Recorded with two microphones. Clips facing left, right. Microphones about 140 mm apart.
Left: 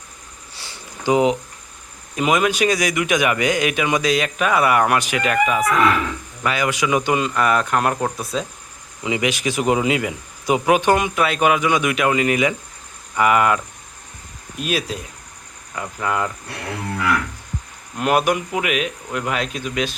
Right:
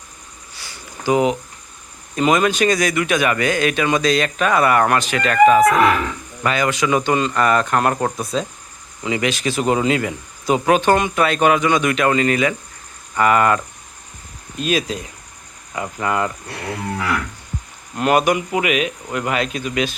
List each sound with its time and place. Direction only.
1.0 s speech: 20° left (ahead or behind)
2.1 s speech: 5° left (ahead or behind)
9.0 s speech: 15° left (ahead or behind)
14.6 s speech: 5° left (ahead or behind)
17.9 s speech: centre (ahead or behind)